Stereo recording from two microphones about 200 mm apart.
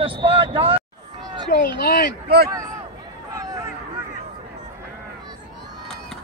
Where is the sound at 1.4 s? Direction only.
50° left (ahead or behind).